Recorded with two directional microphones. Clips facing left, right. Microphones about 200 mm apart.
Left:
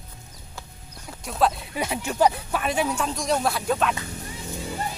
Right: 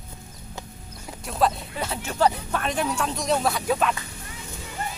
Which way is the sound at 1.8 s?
15° left (ahead or behind).